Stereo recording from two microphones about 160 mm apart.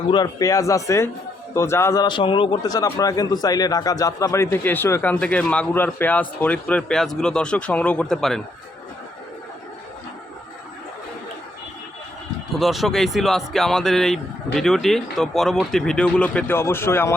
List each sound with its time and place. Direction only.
0.1 s a man's voice: 25° left (ahead or behind); by 8.4 s 5° left (ahead or behind)
12.5 s speech: centre (ahead or behind); by 17.2 s 15° left (ahead or behind)